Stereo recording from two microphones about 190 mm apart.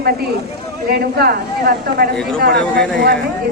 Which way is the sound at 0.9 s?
55° right (ahead or behind).